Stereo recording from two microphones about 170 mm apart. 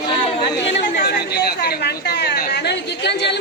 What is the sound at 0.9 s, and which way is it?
A woman's voice, 65° left (ahead or behind).